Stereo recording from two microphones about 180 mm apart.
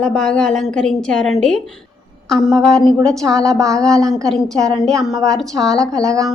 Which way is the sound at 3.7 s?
5° left (ahead or behind).